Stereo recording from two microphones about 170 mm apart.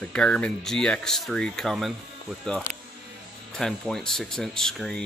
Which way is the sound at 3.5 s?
5° left (ahead or behind).